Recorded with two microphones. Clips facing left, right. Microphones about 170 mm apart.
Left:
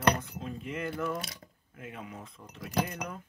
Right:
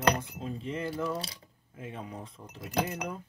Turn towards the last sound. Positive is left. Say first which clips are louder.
# right 1 dB
turn(degrees=-25)  # may be behind; listen again after turning